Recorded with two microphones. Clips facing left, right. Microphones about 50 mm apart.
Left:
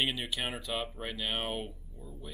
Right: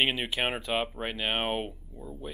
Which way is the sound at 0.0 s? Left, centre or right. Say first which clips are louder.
Right 5 dB; right.